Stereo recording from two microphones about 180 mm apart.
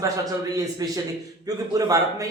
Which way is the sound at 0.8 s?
20° right (ahead or behind).